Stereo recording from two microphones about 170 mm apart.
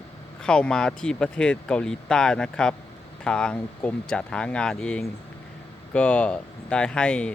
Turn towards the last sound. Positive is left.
turn(degrees=5)  # may be behind; listen again after turning